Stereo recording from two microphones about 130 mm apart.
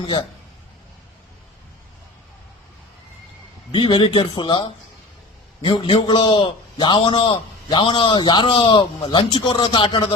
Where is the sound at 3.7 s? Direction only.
35° left (ahead or behind).